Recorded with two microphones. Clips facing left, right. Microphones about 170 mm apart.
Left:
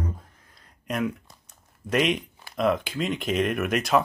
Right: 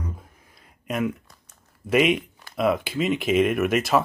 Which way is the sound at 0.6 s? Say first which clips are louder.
Right 2 dB; 5° right (ahead or behind).